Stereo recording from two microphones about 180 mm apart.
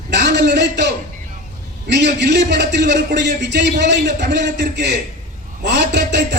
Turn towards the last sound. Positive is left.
turn(degrees=-70)  # may be behind; listen again after turning